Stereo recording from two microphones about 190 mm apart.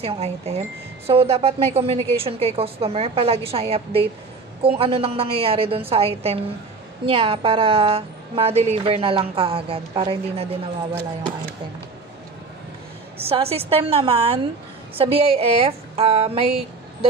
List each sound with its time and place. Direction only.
0.0 s a woman's voice: 35° right (ahead or behind)
13.2 s a woman's voice: 30° right (ahead or behind)